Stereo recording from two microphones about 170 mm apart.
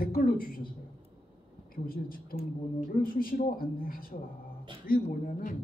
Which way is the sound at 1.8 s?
60° left (ahead or behind).